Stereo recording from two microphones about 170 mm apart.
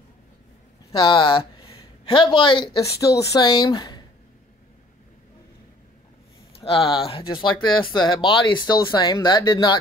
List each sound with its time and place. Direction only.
0.9 s speech: 30° left (ahead or behind)
6.9 s speech: 35° left (ahead or behind)